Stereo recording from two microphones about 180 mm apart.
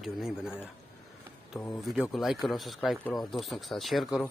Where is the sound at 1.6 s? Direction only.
10° left (ahead or behind).